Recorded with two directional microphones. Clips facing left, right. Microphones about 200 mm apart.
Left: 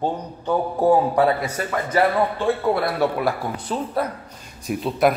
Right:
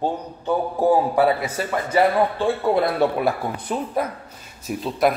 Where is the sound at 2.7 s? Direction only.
20° right (ahead or behind).